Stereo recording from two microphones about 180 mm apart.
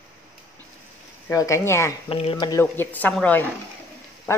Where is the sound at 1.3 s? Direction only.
15° left (ahead or behind).